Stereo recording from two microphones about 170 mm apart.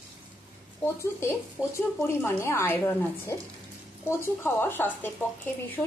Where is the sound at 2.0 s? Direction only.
15° left (ahead or behind).